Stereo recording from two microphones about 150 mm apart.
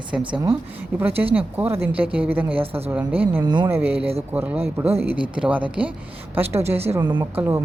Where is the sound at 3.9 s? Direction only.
40° right (ahead or behind).